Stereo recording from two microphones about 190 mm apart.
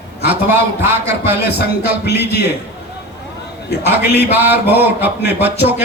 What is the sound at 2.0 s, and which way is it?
Speech, 60° left (ahead or behind).